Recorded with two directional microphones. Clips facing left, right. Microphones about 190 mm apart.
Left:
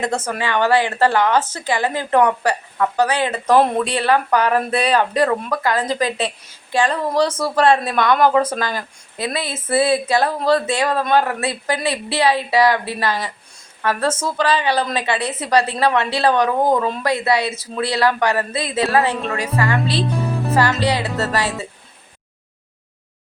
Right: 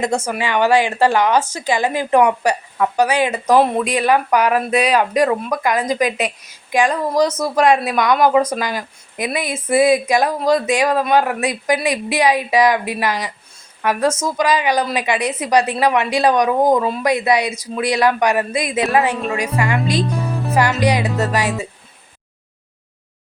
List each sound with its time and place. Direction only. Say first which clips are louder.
0.0 s speech: right 2 dB; 10° right (ahead or behind)